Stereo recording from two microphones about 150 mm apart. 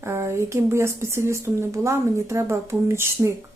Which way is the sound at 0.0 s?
15° right (ahead or behind).